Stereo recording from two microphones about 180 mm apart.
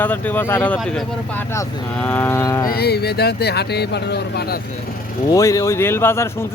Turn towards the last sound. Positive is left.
turn(degrees=15)  # may be behind; listen again after turning